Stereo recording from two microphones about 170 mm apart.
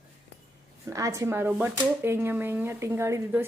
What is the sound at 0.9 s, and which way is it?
Speech, 20° right (ahead or behind).